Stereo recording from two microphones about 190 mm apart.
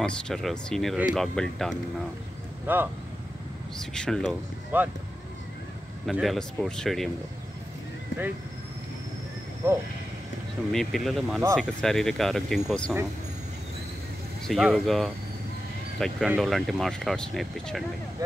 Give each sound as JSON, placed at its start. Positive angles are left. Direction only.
{"t": 0.0, "sound": "speech", "side_deg": 0}
{"t": 2.6, "sound": "speech", "side_deg": -10}
{"t": 3.9, "sound": "speech", "side_deg": 5}
{"t": 4.7, "sound": "speech", "side_deg": -10}
{"t": 6.0, "sound": "speech", "side_deg": 0}
{"t": 10.7, "sound": "speech", "side_deg": 0}
{"t": 14.5, "sound": "speech", "side_deg": 0}
{"t": 16.3, "sound": "speech", "side_deg": 0}